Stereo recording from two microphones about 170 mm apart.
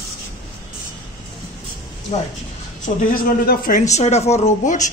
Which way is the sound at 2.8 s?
55° left (ahead or behind).